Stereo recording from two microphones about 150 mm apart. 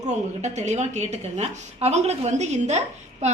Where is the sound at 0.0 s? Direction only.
50° right (ahead or behind).